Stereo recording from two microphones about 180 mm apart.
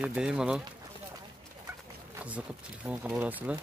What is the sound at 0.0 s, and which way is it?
Speech, 5° right (ahead or behind).